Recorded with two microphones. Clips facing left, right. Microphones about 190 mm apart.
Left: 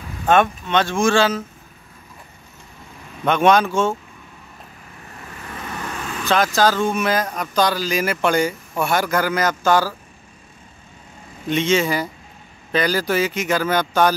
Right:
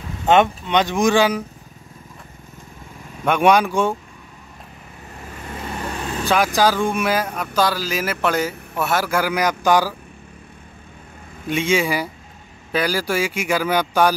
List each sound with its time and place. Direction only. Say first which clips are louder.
0.3 s speech: right 1 dB; 20° right (ahead or behind)
3.3 s speech: even; 10° right (ahead or behind)
5.7 s vehicle: right 3 dB; 30° right (ahead or behind)
6.2 s speech: even; 10° right (ahead or behind)
11.4 s speech: left 1 dB; 10° right (ahead or behind)